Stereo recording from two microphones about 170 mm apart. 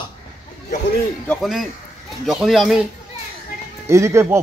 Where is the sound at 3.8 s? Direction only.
15° right (ahead or behind).